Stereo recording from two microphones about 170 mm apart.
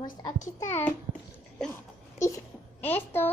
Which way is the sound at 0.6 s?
15° left (ahead or behind).